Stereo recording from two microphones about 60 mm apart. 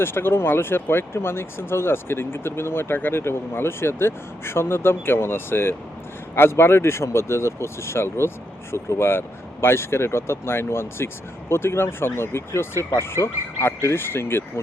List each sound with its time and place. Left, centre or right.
0.0 s speech: left